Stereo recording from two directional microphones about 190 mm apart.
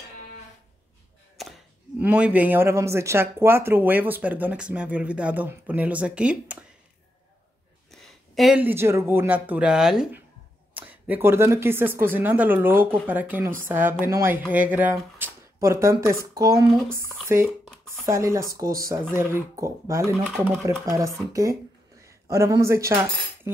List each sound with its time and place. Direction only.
1.4 s a sound: centre (ahead or behind)
2.0 s speech: 5° right (ahead or behind)
7.9 s speech: centre (ahead or behind); by 23.6 s 15° right (ahead or behind)